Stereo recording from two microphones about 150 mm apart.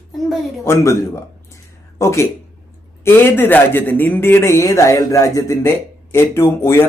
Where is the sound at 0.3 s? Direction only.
Centre (ahead or behind).